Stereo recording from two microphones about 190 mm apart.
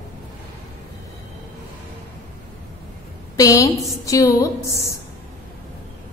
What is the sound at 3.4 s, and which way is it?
A woman's voice, 15° left (ahead or behind).